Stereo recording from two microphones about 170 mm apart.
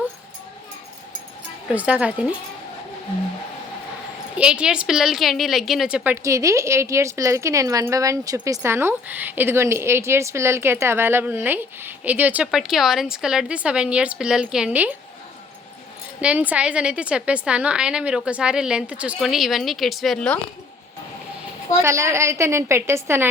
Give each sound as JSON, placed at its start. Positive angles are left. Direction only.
{"t": 1.7, "sound": "a woman's voice", "side_deg": -10}
{"t": 4.4, "sound": "a woman's voice", "side_deg": -5}
{"t": 16.2, "sound": "a woman's voice", "side_deg": -10}
{"t": 21.8, "sound": "a woman's voice", "side_deg": -15}